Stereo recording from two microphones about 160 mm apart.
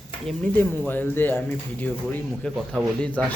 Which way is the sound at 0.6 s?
10° left (ahead or behind).